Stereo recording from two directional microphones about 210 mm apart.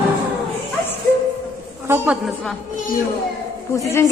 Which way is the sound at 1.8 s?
10° right (ahead or behind).